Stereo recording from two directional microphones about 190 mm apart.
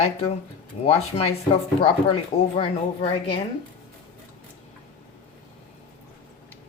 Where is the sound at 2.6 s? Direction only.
25° left (ahead or behind).